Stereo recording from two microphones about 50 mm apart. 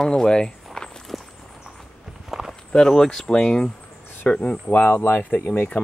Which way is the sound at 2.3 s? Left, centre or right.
Centre.